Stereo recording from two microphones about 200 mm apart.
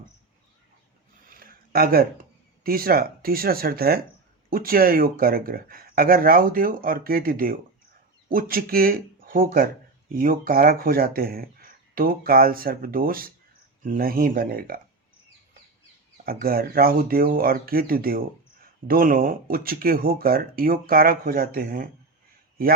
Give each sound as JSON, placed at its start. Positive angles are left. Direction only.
{"t": 1.3, "sound": "a sound", "side_deg": -45}
{"t": 2.6, "sound": "speech", "side_deg": -45}
{"t": 16.2, "sound": "speech", "side_deg": -45}